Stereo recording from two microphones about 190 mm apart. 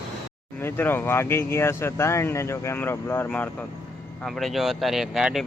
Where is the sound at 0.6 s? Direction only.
10° left (ahead or behind).